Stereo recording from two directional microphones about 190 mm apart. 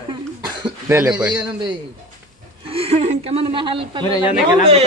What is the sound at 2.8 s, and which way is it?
A man's voice, 35° right (ahead or behind).